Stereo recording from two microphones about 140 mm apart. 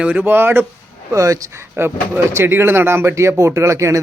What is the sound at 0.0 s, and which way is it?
Speech, 10° right (ahead or behind).